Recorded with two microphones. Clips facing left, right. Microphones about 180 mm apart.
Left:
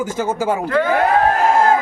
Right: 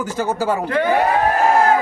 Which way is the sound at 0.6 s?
20° right (ahead or behind).